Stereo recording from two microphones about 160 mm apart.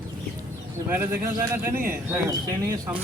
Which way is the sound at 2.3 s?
25° right (ahead or behind).